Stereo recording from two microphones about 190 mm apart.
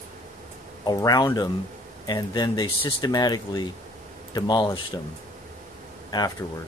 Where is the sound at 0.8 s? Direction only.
20° left (ahead or behind).